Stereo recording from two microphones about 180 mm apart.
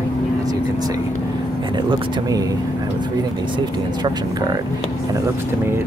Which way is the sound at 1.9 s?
20° right (ahead or behind).